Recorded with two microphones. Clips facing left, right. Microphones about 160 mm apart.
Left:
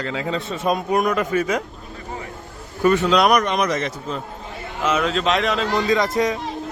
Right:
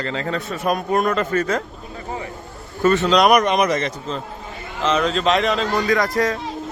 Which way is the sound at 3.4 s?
15° right (ahead or behind).